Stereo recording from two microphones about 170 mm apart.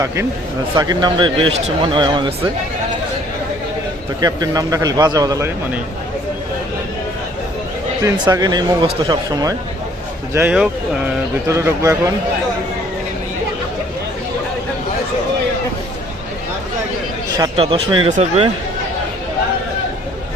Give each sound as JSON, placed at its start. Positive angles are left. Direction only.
{"t": 0.8, "sound": "speech", "side_deg": -25}
{"t": 4.2, "sound": "speech", "side_deg": -20}
{"t": 8.0, "sound": "speech", "side_deg": -25}
{"t": 10.3, "sound": "speech", "side_deg": -10}
{"t": 11.4, "sound": "speech", "side_deg": -15}
{"t": 17.3, "sound": "speech", "side_deg": -25}